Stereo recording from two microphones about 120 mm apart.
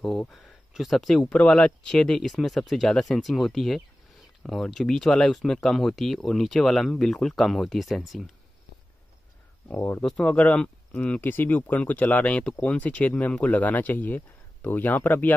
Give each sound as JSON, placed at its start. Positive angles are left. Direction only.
{"t": 0.3, "sound": "speech", "side_deg": 0}
{"t": 9.7, "sound": "speech", "side_deg": 15}